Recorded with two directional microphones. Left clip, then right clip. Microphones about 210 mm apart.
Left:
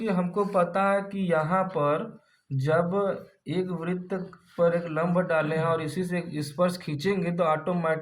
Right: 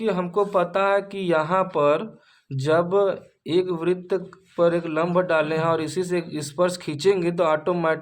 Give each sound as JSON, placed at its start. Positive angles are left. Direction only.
{"t": 0.1, "sound": "speech", "side_deg": -35}